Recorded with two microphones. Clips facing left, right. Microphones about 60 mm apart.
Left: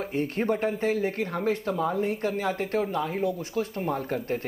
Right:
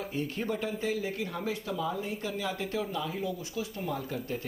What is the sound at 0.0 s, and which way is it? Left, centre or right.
Speech, left.